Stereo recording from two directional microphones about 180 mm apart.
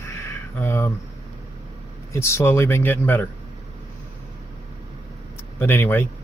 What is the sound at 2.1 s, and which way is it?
Speech, 15° left (ahead or behind).